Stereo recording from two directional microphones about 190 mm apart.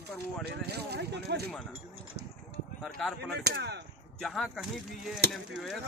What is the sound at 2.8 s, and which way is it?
Speech, centre (ahead or behind).